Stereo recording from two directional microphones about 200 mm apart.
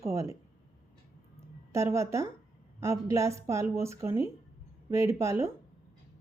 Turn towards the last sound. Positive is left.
turn(degrees=-15)  # may be behind; listen again after turning